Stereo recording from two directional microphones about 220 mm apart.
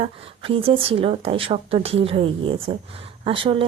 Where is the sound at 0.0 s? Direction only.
25° right (ahead or behind).